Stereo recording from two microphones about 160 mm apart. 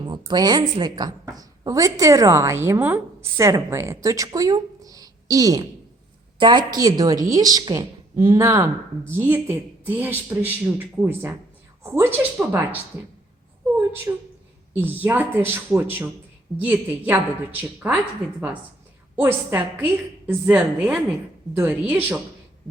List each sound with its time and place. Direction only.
0.0 s a woman's voice: 25° right (ahead or behind); by 12.8 s 10° right (ahead or behind)
14.1 s a woman's voice: 20° right (ahead or behind)
19.1 s a woman's voice: 15° right (ahead or behind)